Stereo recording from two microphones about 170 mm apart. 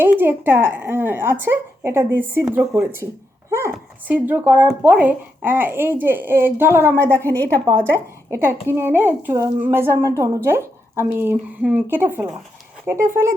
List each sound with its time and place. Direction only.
0.0 s a woman's voice: 10° right (ahead or behind)
4.1 s a woman's voice: 10° right (ahead or behind)